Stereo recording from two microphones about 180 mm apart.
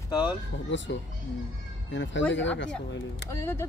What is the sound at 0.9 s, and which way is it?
Speech, 75° left (ahead or behind).